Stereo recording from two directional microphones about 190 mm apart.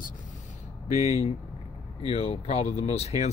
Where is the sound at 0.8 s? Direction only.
35° left (ahead or behind).